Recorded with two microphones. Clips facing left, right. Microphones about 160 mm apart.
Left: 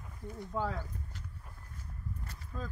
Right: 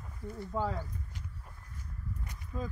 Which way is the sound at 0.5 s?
10° right (ahead or behind).